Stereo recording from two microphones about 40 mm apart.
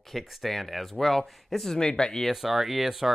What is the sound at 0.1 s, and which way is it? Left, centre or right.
Speech, centre.